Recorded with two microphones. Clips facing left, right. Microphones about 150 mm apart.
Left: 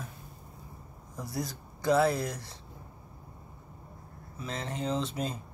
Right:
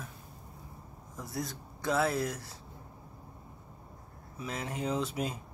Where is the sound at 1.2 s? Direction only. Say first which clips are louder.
Left 2 dB; centre (ahead or behind).